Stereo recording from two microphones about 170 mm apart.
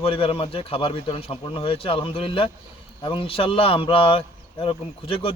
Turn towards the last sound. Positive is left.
turn(degrees=30)  # may be behind; listen again after turning